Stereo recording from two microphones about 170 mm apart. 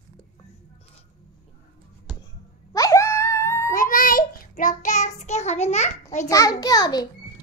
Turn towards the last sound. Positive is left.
turn(degrees=20)  # may be behind; listen again after turning